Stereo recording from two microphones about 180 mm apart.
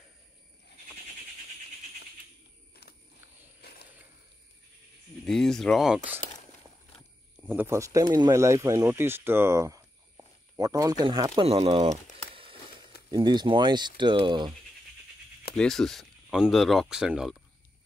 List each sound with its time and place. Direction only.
3.6 s coin: 65° left (ahead or behind)
5.2 s speech: 5° left (ahead or behind)
7.3 s speech: 10° right (ahead or behind)
11.4 s a sound: 35° right (ahead or behind)
13.1 s speech: 25° right (ahead or behind)
15.5 s speech: 5° left (ahead or behind)